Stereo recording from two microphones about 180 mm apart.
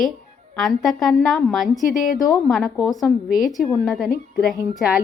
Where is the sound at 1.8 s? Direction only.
50° left (ahead or behind).